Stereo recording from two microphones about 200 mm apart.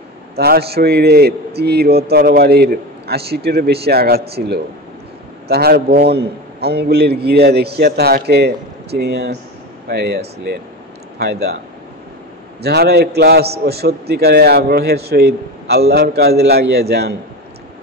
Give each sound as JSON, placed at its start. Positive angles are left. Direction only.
{"t": 0.4, "sound": "a man's voice", "side_deg": -50}
{"t": 5.5, "sound": "a man's voice", "side_deg": -50}
{"t": 12.6, "sound": "a man's voice", "side_deg": -55}